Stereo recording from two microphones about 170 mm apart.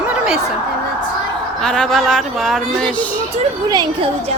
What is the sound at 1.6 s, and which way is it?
Speech, 5° left (ahead or behind).